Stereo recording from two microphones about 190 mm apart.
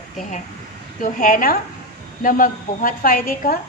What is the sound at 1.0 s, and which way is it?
A woman's voice, 45° left (ahead or behind).